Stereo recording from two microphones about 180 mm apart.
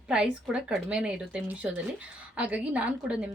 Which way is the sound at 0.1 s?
5° right (ahead or behind).